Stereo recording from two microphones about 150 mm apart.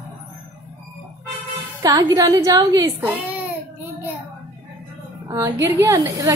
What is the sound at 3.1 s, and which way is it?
Speech, 10° right (ahead or behind).